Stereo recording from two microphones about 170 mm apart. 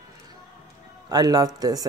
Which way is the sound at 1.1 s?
20° right (ahead or behind).